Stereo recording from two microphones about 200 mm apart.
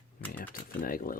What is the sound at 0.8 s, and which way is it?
Speech, 45° left (ahead or behind).